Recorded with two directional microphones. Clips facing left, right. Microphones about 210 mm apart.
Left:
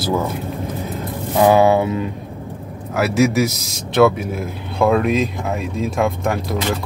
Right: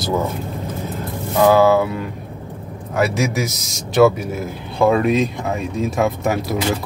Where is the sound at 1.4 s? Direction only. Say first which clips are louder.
Even; 20° left (ahead or behind).